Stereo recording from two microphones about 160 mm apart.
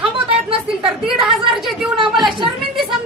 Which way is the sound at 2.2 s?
30° right (ahead or behind).